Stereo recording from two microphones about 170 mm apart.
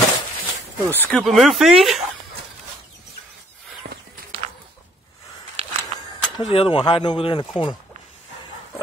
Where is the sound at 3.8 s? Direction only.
80° right.